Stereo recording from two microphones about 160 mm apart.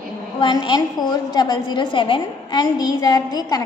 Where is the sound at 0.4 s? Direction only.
30° left (ahead or behind).